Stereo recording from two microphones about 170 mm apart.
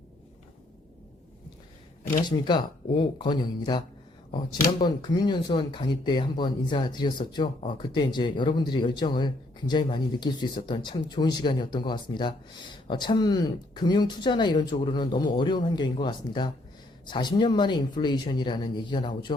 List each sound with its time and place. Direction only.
2.3 s speech: 25° left (ahead or behind)